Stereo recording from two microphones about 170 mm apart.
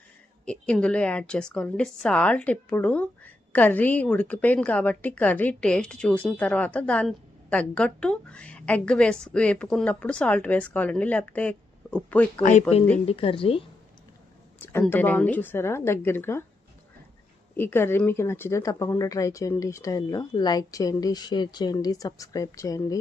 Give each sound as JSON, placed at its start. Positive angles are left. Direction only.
{"t": 0.4, "sound": "a woman's voice", "side_deg": 5}
{"t": 12.4, "sound": "speech", "side_deg": 45}
{"t": 13.1, "sound": "a woman's voice", "side_deg": 35}
{"t": 14.6, "sound": "a woman's voice", "side_deg": 10}
{"t": 17.6, "sound": "speech", "side_deg": 10}